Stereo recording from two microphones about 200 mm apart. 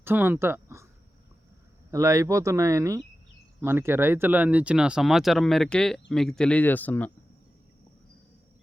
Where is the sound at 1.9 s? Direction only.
15° right (ahead or behind); by 7.1 s 10° left (ahead or behind).